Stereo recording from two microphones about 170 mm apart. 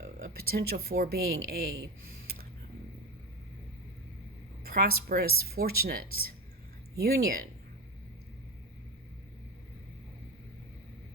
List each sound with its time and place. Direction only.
0.0 s speech: 60° right (ahead or behind)
4.6 s speech: 65° right (ahead or behind)